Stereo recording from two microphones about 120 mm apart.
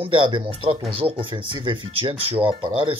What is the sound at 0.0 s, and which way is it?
Speech, 40° right (ahead or behind).